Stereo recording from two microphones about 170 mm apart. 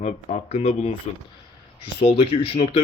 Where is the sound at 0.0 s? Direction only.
40° left (ahead or behind).